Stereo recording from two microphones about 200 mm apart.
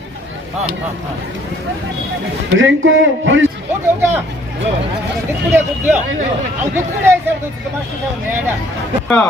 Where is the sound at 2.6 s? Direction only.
70° right (ahead or behind).